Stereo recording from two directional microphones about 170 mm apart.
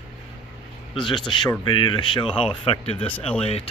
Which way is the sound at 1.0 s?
25° left (ahead or behind).